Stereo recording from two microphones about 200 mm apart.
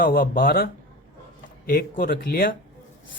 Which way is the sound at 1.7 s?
50° left (ahead or behind).